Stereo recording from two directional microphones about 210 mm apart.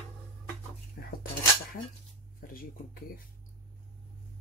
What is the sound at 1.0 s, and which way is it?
Dishes, 50° left (ahead or behind).